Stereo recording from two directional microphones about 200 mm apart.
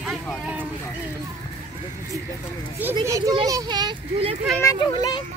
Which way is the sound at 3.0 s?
15° right (ahead or behind).